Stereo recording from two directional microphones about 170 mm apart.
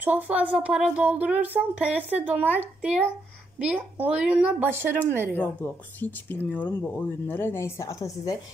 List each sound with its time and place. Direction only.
0.0 s speech: 10° right (ahead or behind)
5.4 s speech: 10° left (ahead or behind)